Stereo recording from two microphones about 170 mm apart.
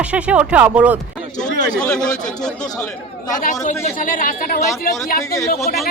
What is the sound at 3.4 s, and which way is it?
A woman's voice, 50° left (ahead or behind).